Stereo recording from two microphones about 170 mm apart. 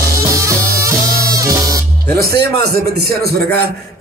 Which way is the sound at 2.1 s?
70° right (ahead or behind).